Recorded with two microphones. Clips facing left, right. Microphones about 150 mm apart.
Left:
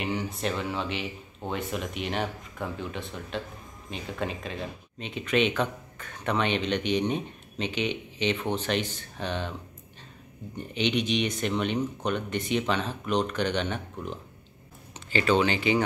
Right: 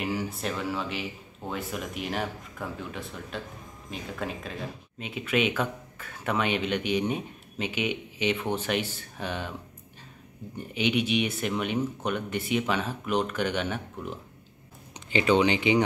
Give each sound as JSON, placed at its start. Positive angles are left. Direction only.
{"t": 0.0, "sound": "speech", "side_deg": -5}
{"t": 10.7, "sound": "speech", "side_deg": -10}